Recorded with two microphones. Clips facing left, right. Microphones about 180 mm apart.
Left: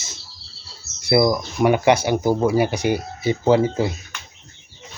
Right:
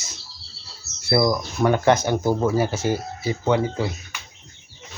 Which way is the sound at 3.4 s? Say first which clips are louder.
Left 4 dB; 25° left (ahead or behind).